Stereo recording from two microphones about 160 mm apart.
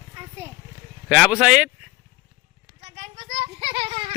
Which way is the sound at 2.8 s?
45° right (ahead or behind).